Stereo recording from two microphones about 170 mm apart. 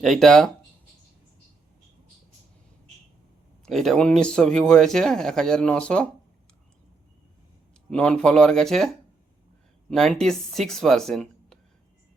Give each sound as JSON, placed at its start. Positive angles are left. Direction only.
{"t": 0.0, "sound": "speech", "side_deg": 0}
{"t": 3.7, "sound": "speech", "side_deg": 0}
{"t": 7.9, "sound": "speech", "side_deg": 5}